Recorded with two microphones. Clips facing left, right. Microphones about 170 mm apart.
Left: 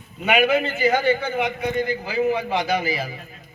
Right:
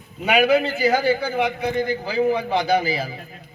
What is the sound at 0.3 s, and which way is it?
A man's voice, 35° right (ahead or behind).